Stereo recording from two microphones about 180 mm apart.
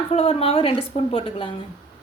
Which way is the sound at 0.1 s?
30° left (ahead or behind).